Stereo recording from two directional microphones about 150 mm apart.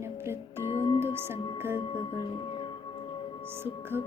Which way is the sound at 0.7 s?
35° left (ahead or behind).